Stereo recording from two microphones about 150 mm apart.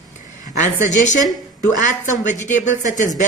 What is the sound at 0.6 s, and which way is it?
Speech, 55° left (ahead or behind).